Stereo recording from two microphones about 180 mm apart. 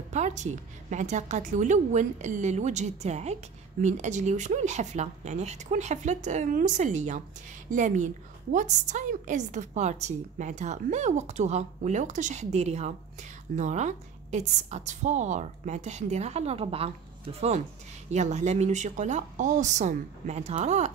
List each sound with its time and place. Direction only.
0.1 s a woman's voice: 40° right (ahead or behind)